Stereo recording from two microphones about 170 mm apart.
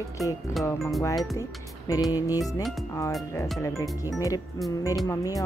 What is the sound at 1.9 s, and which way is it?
Speech, 20° left (ahead or behind).